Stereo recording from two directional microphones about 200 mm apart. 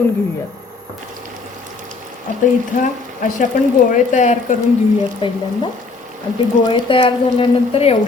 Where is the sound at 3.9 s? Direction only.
35° left (ahead or behind).